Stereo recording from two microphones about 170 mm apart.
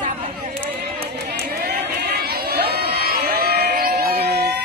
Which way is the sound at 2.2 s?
65° right (ahead or behind).